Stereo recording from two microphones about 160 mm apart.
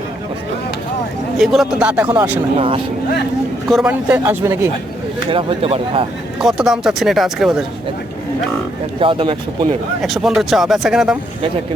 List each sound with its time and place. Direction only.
1.4 s a man's voice: 5° right (ahead or behind)
2.6 s speech: 35° right (ahead or behind)
3.7 s a man's voice: 5° right (ahead or behind)
5.3 s speech: 35° right (ahead or behind)
6.4 s speech: centre (ahead or behind)
9.0 s speech: 35° right (ahead or behind)
10.0 s speech: centre (ahead or behind)